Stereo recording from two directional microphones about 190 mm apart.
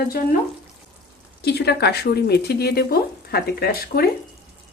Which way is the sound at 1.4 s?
60° left (ahead or behind).